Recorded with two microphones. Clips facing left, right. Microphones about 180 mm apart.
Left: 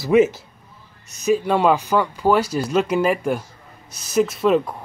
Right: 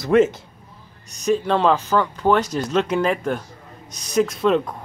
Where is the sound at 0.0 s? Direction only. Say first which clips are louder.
Left 1 dB; 5° left (ahead or behind).